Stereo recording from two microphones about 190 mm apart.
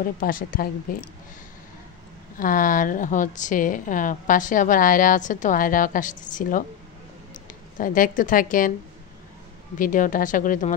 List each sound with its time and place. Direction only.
0.0 s a woman's voice: 45° left (ahead or behind)
2.3 s a woman's voice: 45° left (ahead or behind)
9.8 s a woman's voice: 45° left (ahead or behind)